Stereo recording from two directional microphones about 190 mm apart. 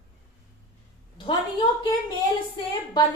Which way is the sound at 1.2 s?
25° left (ahead or behind).